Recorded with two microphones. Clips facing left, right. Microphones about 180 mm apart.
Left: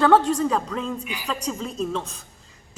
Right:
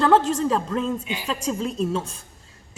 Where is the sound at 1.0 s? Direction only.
25° right (ahead or behind).